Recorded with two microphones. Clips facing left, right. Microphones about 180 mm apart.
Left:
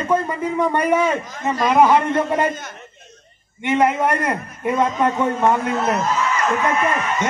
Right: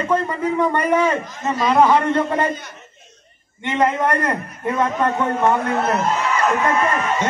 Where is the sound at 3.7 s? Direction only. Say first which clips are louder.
Left 1 dB; 10° left (ahead or behind).